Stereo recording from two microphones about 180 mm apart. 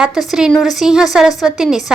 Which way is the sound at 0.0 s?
Centre (ahead or behind).